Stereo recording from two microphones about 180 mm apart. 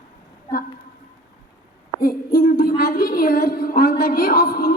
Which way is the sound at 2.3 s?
55° left (ahead or behind).